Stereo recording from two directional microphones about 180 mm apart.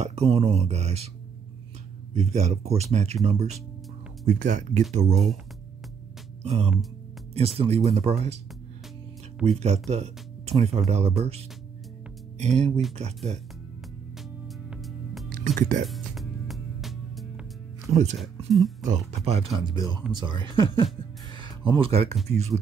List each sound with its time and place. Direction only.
0.0 s speech: 35° right (ahead or behind)
2.1 s speech: 35° right (ahead or behind)
6.4 s speech: 35° right (ahead or behind)
9.4 s speech: 35° right (ahead or behind)
12.5 s speech: 35° right (ahead or behind)
14.7 s music: centre (ahead or behind)
15.4 s speech: 45° right (ahead or behind)
15.9 s music: centre (ahead or behind)
18.5 s speech: centre (ahead or behind)
18.9 s speech: 35° right (ahead or behind)
19.6 s speech: 25° right (ahead or behind)